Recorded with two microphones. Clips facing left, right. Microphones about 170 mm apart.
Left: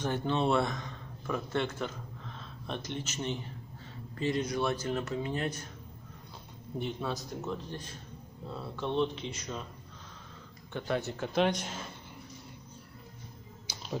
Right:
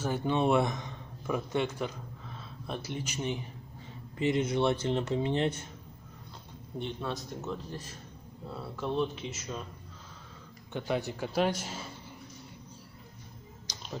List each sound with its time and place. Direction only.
0.0 s speech: 5° right (ahead or behind); by 5.7 s 25° right (ahead or behind)
6.8 s speech: centre (ahead or behind)
10.7 s a man's voice: 15° right (ahead or behind)
13.7 s finger snapping: 10° left (ahead or behind)